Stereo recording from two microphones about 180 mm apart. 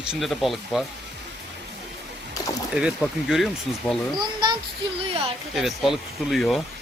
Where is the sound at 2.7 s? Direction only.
5° right (ahead or behind).